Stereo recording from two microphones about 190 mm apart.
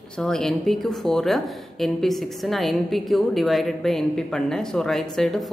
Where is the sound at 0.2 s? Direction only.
5° left (ahead or behind).